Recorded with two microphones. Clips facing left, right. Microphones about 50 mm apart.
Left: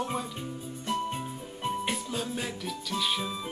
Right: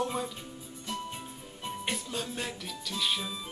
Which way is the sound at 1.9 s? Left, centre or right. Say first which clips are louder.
Left 3 dB; centre.